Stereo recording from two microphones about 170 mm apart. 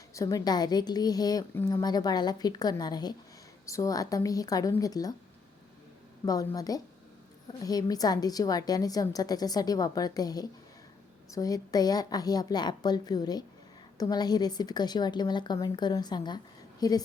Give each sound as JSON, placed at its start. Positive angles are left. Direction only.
{"t": 0.1, "sound": "a woman's voice", "side_deg": 20}
{"t": 6.2, "sound": "a woman's voice", "side_deg": 20}